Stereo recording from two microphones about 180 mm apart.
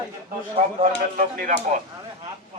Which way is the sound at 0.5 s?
35° right (ahead or behind).